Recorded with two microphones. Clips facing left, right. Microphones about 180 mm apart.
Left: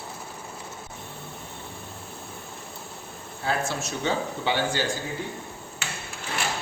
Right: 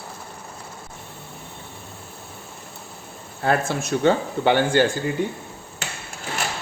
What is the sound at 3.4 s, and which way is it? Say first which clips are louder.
Speech: right 6 dB; 55° right (ahead or behind).